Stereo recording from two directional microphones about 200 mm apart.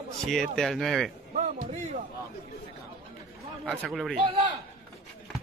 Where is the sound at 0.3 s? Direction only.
Centre (ahead or behind).